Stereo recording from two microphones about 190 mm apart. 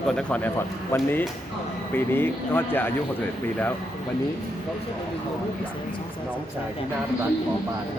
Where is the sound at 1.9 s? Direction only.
10° left (ahead or behind).